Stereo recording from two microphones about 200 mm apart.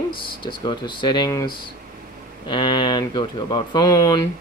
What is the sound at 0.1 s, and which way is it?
Speech, 25° left (ahead or behind).